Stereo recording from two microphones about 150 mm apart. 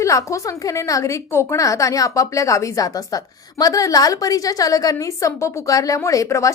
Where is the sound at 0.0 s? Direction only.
20° left (ahead or behind).